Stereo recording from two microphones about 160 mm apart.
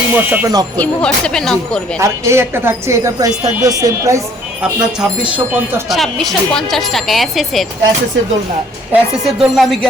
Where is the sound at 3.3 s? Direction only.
50° right (ahead or behind).